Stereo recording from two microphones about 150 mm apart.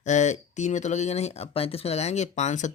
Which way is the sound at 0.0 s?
50° left (ahead or behind).